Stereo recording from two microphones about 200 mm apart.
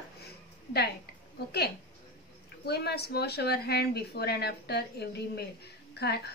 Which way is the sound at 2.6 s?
55° left (ahead or behind).